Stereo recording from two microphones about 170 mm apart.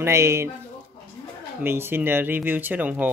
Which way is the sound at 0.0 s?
15° right (ahead or behind).